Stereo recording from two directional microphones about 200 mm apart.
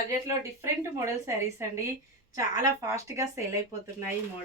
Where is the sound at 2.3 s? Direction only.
15° right (ahead or behind).